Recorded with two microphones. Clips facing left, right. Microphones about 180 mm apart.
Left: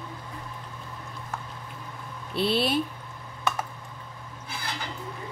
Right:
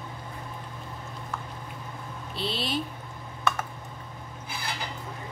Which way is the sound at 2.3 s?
60° left (ahead or behind).